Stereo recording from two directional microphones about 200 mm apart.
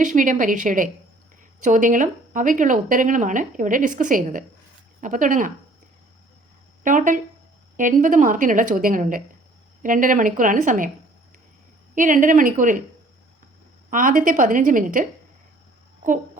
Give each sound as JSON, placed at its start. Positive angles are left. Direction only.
{"t": 0.0, "sound": "speech", "side_deg": -40}
{"t": 6.8, "sound": "speech", "side_deg": -40}
{"t": 11.9, "sound": "speech", "side_deg": -40}
{"t": 13.9, "sound": "speech", "side_deg": -40}